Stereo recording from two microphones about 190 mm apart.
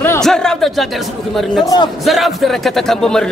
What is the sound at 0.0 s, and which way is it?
Speech, 5° left (ahead or behind).